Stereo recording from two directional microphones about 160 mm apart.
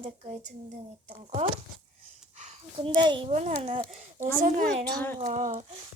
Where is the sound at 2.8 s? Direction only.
30° right (ahead or behind).